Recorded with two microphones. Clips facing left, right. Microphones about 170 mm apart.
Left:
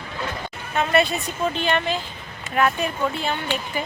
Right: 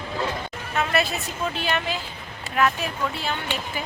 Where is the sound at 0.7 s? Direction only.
Centre (ahead or behind).